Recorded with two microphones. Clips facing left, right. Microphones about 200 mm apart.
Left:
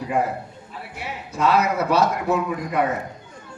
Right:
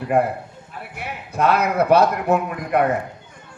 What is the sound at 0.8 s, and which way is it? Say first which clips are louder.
A man's voice: right 1 dB; 55° right (ahead or behind).